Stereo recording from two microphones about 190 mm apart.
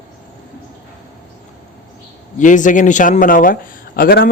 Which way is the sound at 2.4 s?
40° left (ahead or behind).